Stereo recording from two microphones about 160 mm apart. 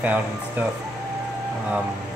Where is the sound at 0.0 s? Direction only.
10° right (ahead or behind).